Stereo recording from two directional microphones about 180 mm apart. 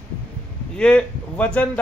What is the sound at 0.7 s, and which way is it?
Speech, 5° left (ahead or behind).